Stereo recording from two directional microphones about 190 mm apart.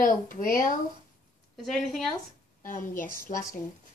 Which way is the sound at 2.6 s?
45° left (ahead or behind).